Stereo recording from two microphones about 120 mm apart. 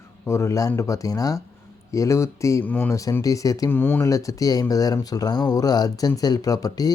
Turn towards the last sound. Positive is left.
turn(degrees=30)  # may be behind; listen again after turning